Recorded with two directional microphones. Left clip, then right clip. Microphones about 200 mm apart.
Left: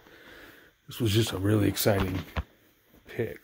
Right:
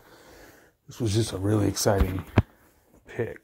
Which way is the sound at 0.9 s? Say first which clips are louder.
Even; 30° left (ahead or behind).